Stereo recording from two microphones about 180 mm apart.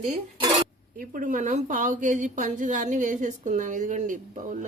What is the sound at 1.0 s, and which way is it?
A woman's voice, 50° right (ahead or behind).